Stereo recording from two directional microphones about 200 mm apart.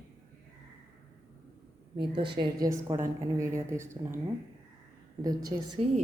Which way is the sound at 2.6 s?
15° right (ahead or behind).